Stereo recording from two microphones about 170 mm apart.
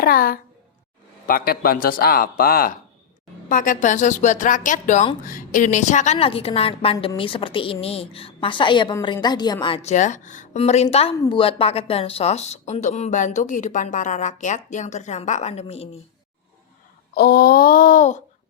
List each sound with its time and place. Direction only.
0.0 s speech: 60° left (ahead or behind)
3.5 s a woman's voice: 50° left (ahead or behind); by 9.9 s 30° left (ahead or behind)
9.9 s a woman's voice: 45° left (ahead or behind)
17.2 s speech: 65° left (ahead or behind); by 18.2 s 50° left (ahead or behind)